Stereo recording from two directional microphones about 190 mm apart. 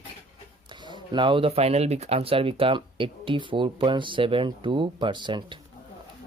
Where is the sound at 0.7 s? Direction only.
25° right (ahead or behind).